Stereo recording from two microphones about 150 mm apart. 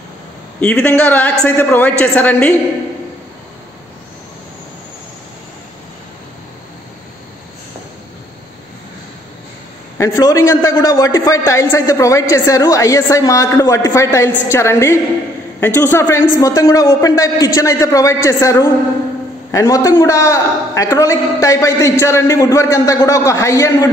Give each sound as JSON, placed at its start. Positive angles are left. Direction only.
{"t": 0.6, "sound": "a man's voice", "side_deg": 10}
{"t": 9.9, "sound": "a man's voice", "side_deg": 20}